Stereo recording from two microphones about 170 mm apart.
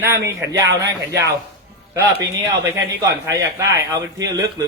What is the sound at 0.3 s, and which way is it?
Speech, 15° right (ahead or behind).